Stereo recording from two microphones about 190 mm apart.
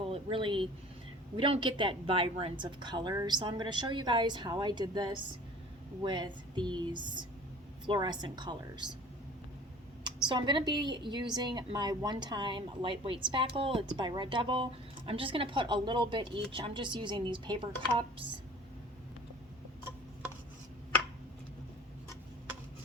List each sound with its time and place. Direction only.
0.1 s a woman's voice: 30° right (ahead or behind)
10.0 s a woman's voice: 25° right (ahead or behind)